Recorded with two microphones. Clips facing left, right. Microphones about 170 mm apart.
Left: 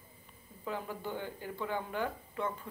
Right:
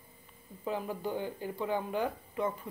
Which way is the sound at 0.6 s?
15° right (ahead or behind).